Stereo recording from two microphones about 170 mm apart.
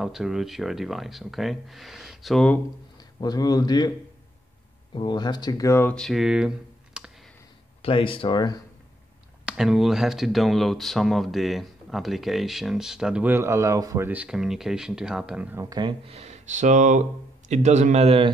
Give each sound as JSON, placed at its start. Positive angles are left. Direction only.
{"t": 0.0, "sound": "speech", "side_deg": 0}
{"t": 3.0, "sound": "speech", "side_deg": 25}
{"t": 4.9, "sound": "speech", "side_deg": 25}
{"t": 7.8, "sound": "speech", "side_deg": 30}
{"t": 9.5, "sound": "speech", "side_deg": -5}
{"t": 15.6, "sound": "speech", "side_deg": -20}
{"t": 16.1, "sound": "speech", "side_deg": -40}